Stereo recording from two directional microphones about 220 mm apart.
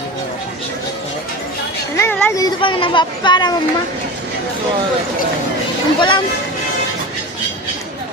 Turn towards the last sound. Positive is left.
turn(degrees=20)  # may be behind; listen again after turning